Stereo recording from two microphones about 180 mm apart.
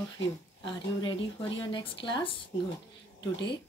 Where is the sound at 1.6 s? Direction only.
25° left (ahead or behind).